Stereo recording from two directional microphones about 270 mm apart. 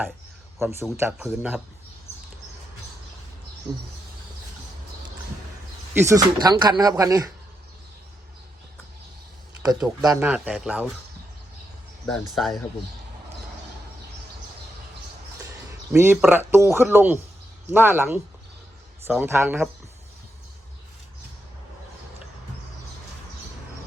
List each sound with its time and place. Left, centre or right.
0.6 s speech: centre
5.9 s speech: centre
9.8 s speech: centre
12.0 s speech: centre
15.9 s speech: centre